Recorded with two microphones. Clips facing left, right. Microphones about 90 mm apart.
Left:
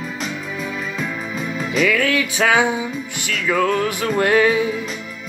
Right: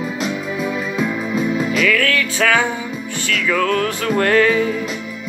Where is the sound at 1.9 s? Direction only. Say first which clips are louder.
Right 1 dB; 15° left (ahead or behind).